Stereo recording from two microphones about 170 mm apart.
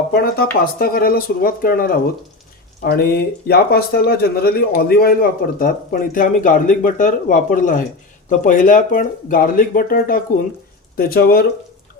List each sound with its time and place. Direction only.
0.1 s speech: 65° left (ahead or behind)